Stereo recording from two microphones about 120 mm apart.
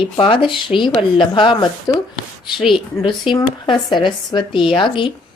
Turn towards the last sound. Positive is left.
turn(degrees=45)  # may be behind; listen again after turning